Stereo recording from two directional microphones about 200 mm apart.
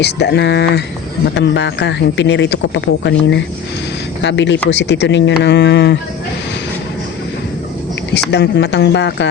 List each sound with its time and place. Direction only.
0.0 s speech: 55° left (ahead or behind)
8.1 s speech: 55° left (ahead or behind)